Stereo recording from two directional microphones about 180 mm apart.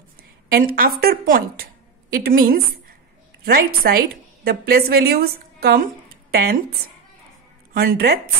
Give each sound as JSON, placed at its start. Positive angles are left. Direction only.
{"t": 0.5, "sound": "a woman's voice", "side_deg": -55}
{"t": 7.7, "sound": "a woman's voice", "side_deg": -55}